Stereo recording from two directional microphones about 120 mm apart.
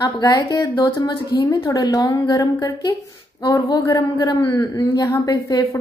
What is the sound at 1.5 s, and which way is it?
A woman's voice, 25° left (ahead or behind).